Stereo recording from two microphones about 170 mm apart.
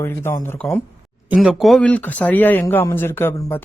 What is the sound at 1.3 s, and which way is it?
Speech, 5° right (ahead or behind).